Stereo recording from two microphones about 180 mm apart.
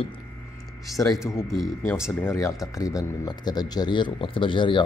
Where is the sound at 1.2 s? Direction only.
10° left (ahead or behind).